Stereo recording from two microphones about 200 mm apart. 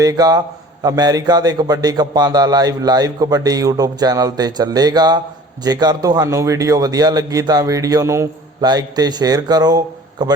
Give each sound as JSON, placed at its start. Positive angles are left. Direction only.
{"t": 0.0, "sound": "a man's voice", "side_deg": -20}